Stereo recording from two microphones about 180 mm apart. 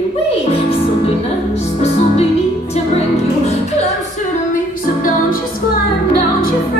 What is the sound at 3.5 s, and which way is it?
Music, 35° left (ahead or behind).